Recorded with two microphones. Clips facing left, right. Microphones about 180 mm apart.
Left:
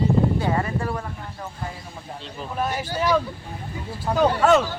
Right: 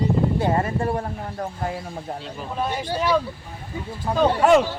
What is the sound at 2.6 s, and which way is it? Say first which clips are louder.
Speech: even; 5° left (ahead or behind).